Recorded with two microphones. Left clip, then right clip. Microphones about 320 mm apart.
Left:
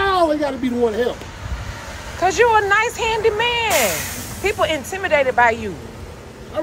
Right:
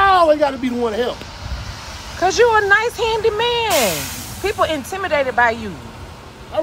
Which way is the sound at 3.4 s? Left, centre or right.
Right.